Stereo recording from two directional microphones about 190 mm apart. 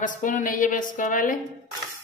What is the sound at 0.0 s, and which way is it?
A woman's voice, 45° left (ahead or behind).